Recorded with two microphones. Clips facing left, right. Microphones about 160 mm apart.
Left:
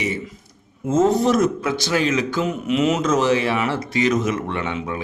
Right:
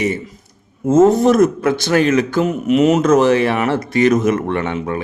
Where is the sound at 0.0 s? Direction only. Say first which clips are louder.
Right 6 dB; 45° right (ahead or behind).